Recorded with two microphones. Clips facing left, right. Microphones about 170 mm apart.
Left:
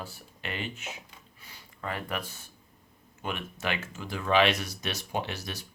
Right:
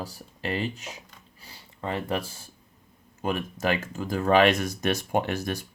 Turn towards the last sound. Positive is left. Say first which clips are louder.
# right 7 dB
turn(degrees=-50)  # may be behind; listen again after turning